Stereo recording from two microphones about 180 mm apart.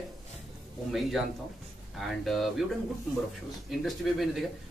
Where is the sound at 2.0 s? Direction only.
Centre (ahead or behind).